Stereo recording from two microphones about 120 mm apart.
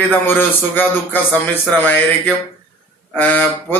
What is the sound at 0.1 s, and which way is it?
A man's voice, 15° left (ahead or behind).